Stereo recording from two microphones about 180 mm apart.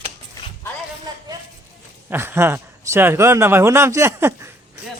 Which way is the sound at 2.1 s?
15° right (ahead or behind).